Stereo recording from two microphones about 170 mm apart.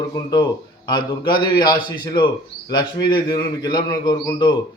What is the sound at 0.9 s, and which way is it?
A man's voice, 30° left (ahead or behind).